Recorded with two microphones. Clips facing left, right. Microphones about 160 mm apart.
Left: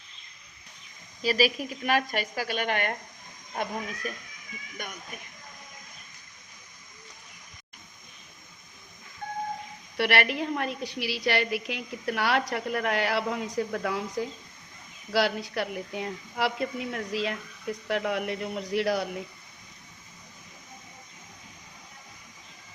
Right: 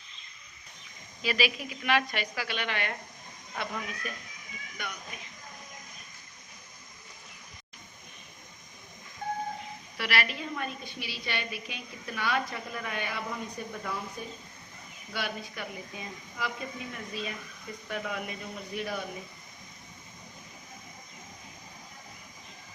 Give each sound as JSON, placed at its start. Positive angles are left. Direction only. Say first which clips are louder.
{"t": 1.2, "sound": "a woman's voice", "louder": "left 5 dB", "side_deg": 40}
{"t": 10.0, "sound": "a woman's voice", "louder": "left 7 dB", "side_deg": 65}